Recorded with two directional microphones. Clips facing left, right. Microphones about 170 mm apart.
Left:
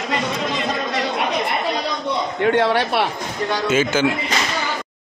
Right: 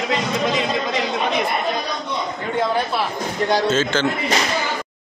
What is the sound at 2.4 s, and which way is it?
Speech, 75° left (ahead or behind).